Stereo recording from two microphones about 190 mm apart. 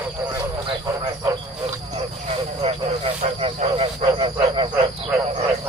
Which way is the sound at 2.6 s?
30° right (ahead or behind).